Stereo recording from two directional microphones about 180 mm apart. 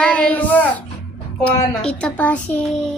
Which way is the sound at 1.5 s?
5° left (ahead or behind).